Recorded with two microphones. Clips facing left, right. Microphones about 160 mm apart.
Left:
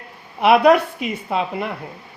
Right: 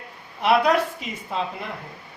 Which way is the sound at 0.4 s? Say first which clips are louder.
Left 6 dB; 65° left (ahead or behind).